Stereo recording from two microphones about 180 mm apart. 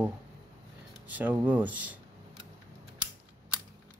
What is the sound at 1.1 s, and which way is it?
Speech, 10° right (ahead or behind).